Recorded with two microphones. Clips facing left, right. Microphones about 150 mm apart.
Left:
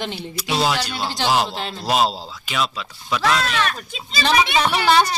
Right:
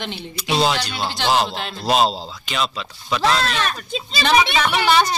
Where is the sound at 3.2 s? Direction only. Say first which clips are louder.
Right 1 dB; 30° right (ahead or behind).